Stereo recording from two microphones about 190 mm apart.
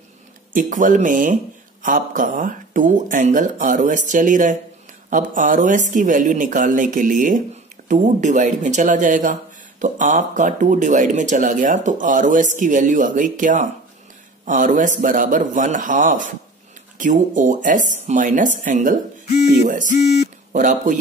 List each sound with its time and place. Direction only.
0.5 s speech: 45° right (ahead or behind)